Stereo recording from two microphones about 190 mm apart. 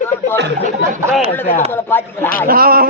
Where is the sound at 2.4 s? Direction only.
50° right (ahead or behind).